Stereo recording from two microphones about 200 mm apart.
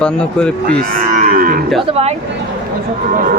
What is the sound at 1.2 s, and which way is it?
Livestock, 45° right (ahead or behind).